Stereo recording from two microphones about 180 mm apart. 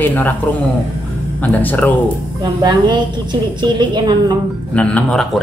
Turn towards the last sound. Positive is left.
turn(degrees=5)  # may be behind; listen again after turning